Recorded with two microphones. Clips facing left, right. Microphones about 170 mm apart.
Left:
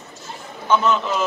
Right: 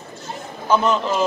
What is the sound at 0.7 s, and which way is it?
Speech, 30° right (ahead or behind).